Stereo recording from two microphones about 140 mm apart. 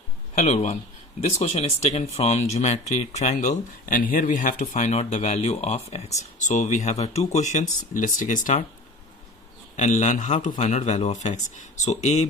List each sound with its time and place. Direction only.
0.3 s speech: 55° left (ahead or behind); by 8.5 s 70° left (ahead or behind)
9.8 s speech: 60° left (ahead or behind)